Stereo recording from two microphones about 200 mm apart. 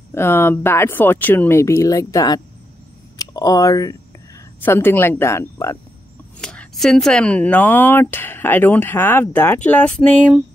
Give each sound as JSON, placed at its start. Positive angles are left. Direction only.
{"t": 0.1, "sound": "speech", "side_deg": 10}